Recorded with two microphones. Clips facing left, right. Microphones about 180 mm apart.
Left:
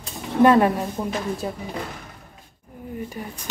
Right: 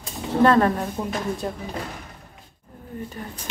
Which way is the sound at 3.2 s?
10° left (ahead or behind).